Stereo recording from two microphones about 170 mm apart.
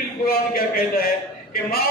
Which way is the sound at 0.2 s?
60° left (ahead or behind).